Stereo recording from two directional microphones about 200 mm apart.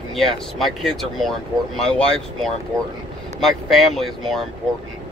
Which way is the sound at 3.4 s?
Centre (ahead or behind).